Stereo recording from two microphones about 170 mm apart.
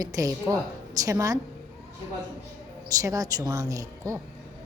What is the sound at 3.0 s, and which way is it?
A woman's voice, 20° right (ahead or behind).